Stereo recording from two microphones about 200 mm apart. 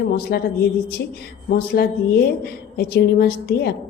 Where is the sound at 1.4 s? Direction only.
50° left (ahead or behind).